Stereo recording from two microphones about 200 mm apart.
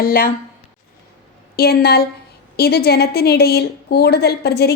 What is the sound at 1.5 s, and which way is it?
A woman's voice, 50° left (ahead or behind).